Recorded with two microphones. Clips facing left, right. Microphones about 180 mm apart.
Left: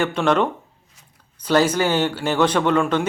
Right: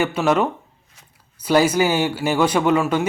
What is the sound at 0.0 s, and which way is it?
Speech, 5° right (ahead or behind).